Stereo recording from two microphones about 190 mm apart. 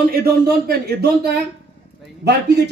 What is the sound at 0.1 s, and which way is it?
A man's voice, 55° right (ahead or behind).